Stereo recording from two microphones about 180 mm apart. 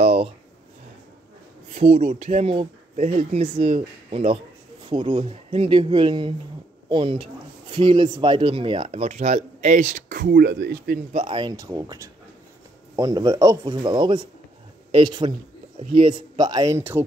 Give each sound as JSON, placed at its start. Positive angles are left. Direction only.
{"t": 0.0, "sound": "a sound", "side_deg": -35}
{"t": 1.7, "sound": "speech", "side_deg": -35}
{"t": 11.1, "sound": "speech", "side_deg": -25}